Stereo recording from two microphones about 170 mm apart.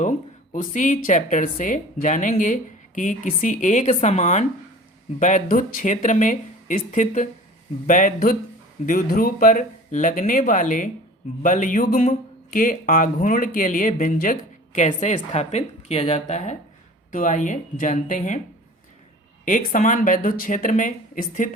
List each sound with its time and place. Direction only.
0.5 s speech: 50° left (ahead or behind)
19.5 s speech: 50° left (ahead or behind)